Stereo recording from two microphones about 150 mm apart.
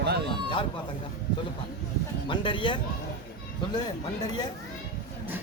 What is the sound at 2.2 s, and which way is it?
Speech, 35° left (ahead or behind).